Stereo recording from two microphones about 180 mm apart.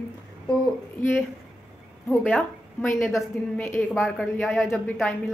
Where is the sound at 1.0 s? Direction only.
45° left (ahead or behind).